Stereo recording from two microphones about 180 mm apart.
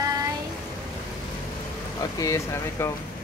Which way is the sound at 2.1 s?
15° left (ahead or behind).